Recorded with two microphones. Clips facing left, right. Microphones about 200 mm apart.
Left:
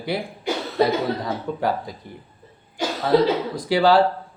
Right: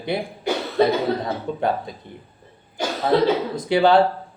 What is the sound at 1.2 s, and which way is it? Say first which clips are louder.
Speech: right 1 dB; 25° right (ahead or behind).